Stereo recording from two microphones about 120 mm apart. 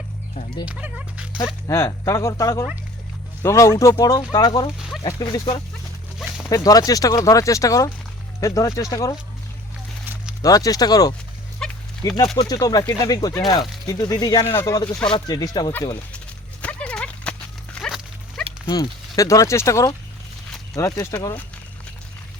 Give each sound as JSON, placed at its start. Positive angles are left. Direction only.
{"t": 0.6, "sound": "speech", "side_deg": -10}
{"t": 1.6, "sound": "speech", "side_deg": 25}
{"t": 6.1, "sound": "a sound", "side_deg": 0}
{"t": 6.5, "sound": "speech", "side_deg": 30}
{"t": 10.4, "sound": "speech", "side_deg": 30}
{"t": 11.6, "sound": "a sound", "side_deg": 5}
{"t": 12.0, "sound": "speech", "side_deg": 35}
{"t": 14.4, "sound": "speech", "side_deg": 25}
{"t": 16.6, "sound": "clip-clop", "side_deg": 10}
{"t": 17.7, "sound": "dog", "side_deg": 5}
{"t": 18.6, "sound": "speech", "side_deg": 35}